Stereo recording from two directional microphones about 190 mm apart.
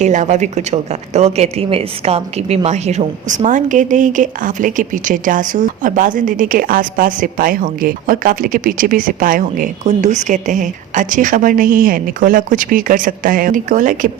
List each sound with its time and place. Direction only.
0.0 s a woman's voice: 40° right (ahead or behind)